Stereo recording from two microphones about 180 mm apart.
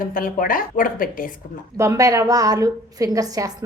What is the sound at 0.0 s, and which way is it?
A woman's voice, 50° left (ahead or behind).